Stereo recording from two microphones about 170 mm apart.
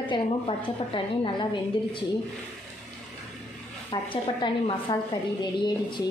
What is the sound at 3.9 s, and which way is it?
A woman's voice, 25° left (ahead or behind).